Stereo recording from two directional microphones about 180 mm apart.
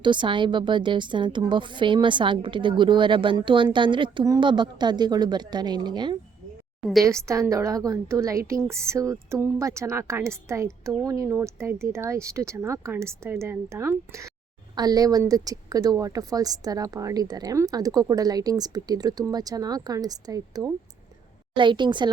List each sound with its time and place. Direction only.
0.0 s a woman's voice: 25° right (ahead or behind)